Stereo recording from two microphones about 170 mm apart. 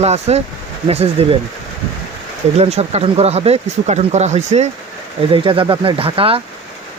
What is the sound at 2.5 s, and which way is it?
Speech, 40° right (ahead or behind).